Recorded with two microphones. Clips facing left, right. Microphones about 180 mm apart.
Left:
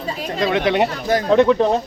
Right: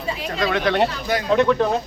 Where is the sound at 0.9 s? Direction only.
40° left (ahead or behind).